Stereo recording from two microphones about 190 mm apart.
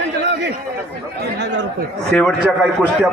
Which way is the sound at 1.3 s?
65° right (ahead or behind).